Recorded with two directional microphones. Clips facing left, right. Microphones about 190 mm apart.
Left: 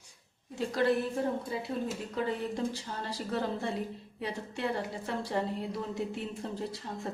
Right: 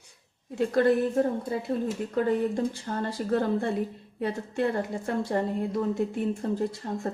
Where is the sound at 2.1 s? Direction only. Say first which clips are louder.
Right 8 dB; 50° right (ahead or behind).